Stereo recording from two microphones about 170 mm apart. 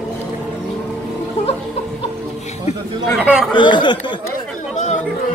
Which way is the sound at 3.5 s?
25° left (ahead or behind).